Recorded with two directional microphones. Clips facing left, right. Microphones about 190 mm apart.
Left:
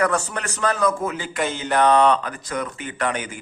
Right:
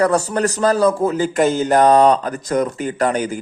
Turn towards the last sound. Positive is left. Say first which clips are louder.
# right 7 dB
turn(degrees=-40)  # may be behind; listen again after turning